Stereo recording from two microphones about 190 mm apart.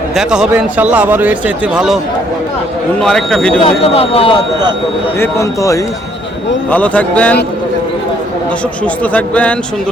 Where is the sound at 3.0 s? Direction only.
5° left (ahead or behind).